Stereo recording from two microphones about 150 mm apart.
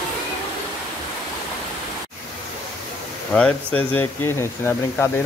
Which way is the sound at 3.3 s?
10° left (ahead or behind).